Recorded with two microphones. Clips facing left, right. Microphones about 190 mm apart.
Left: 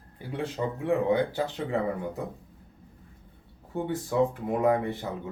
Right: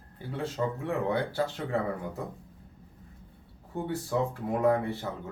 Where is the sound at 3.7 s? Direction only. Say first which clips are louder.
Left 3 dB; 15° left (ahead or behind).